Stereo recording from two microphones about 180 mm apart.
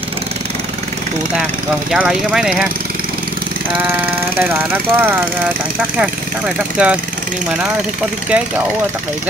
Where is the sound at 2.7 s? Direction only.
55° right (ahead or behind).